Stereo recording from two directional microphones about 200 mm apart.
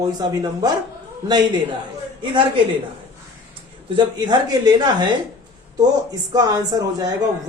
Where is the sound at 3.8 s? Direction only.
25° right (ahead or behind).